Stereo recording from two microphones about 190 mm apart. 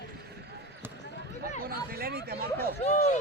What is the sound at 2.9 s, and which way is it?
Speech, 35° left (ahead or behind).